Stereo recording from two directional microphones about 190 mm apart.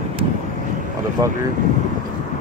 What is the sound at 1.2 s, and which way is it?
Speech, 20° right (ahead or behind).